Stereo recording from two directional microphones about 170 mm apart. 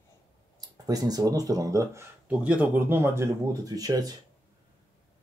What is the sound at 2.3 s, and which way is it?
Speech, 5° right (ahead or behind).